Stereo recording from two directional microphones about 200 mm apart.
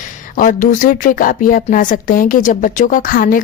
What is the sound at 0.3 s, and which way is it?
A woman's voice, 40° left (ahead or behind).